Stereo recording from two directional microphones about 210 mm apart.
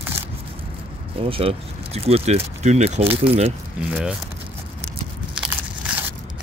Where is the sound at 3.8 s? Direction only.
5° right (ahead or behind).